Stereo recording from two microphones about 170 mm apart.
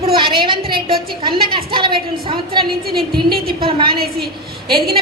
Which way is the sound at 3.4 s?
30° right (ahead or behind).